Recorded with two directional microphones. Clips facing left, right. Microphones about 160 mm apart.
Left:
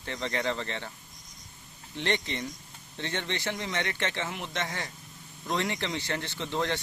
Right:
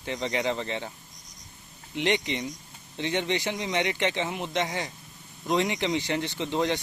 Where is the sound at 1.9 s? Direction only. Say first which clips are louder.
Right 4 dB; 15° right (ahead or behind).